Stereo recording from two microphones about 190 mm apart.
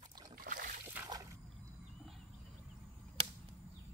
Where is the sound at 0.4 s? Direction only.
45° right (ahead or behind).